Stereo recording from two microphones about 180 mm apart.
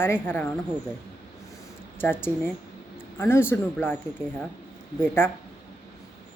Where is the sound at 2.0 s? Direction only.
10° left (ahead or behind).